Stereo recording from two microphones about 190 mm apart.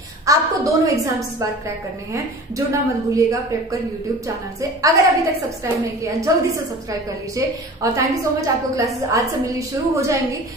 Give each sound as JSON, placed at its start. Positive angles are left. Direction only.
{"t": 0.3, "sound": "a woman's voice", "side_deg": -15}
{"t": 2.1, "sound": "a woman's voice", "side_deg": -15}
{"t": 4.6, "sound": "a woman's voice", "side_deg": -15}
{"t": 6.3, "sound": "a woman's voice", "side_deg": -15}